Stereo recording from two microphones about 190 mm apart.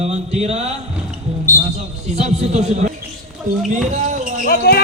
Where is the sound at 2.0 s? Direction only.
35° right (ahead or behind).